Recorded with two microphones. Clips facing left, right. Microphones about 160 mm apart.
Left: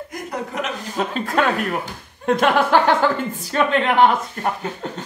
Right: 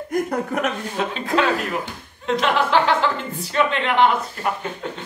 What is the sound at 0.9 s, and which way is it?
A woman's voice, 45° left (ahead or behind).